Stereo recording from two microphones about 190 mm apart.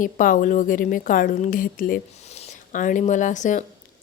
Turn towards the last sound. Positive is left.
turn(degrees=40)  # may be behind; listen again after turning